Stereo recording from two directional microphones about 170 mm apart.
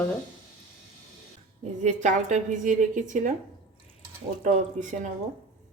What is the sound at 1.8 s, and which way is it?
A woman's voice, 45° right (ahead or behind).